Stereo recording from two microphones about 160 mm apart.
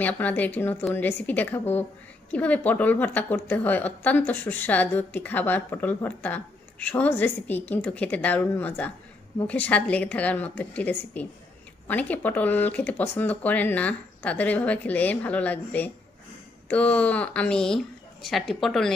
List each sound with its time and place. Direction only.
0.0 s a woman's voice: 10° left (ahead or behind)